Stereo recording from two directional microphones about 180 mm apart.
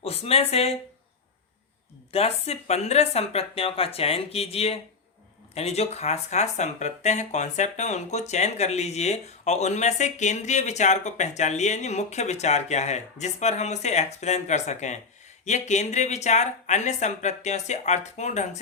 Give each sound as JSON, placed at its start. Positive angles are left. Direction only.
{"t": 0.0, "sound": "speech", "side_deg": 35}
{"t": 2.1, "sound": "speech", "side_deg": 35}